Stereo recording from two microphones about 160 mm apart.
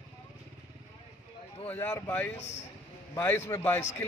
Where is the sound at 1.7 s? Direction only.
10° left (ahead or behind).